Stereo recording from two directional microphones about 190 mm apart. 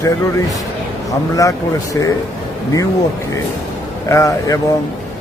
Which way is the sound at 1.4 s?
20° left (ahead or behind).